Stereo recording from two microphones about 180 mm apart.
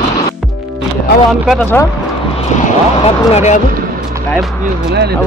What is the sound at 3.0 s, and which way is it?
Speech, 40° left (ahead or behind).